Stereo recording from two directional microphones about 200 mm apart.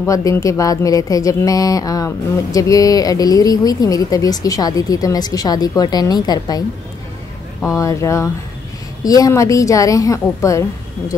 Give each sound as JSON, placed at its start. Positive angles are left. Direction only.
{"t": 0.0, "sound": "speech", "side_deg": 15}
{"t": 7.6, "sound": "speech", "side_deg": 15}